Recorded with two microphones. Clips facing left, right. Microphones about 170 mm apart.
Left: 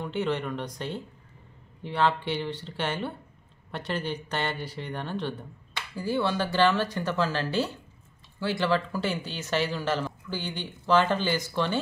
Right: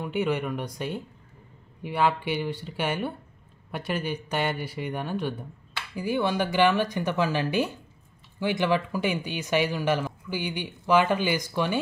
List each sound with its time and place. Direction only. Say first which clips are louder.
0.0 s speech: right 2 dB; 10° right (ahead or behind)